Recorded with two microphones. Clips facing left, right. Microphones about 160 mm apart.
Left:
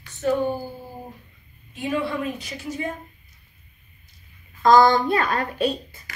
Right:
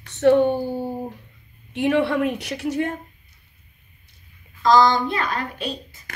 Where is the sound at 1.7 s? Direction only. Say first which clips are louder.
Right 6 dB; 70° right (ahead or behind).